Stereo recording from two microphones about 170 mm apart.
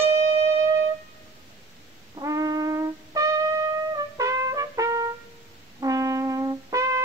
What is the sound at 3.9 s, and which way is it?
Trumpet, 20° right (ahead or behind).